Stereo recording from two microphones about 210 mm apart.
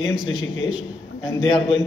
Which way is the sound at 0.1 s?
5° right (ahead or behind).